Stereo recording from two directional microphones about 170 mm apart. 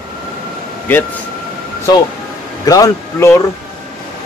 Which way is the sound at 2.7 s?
20° left (ahead or behind).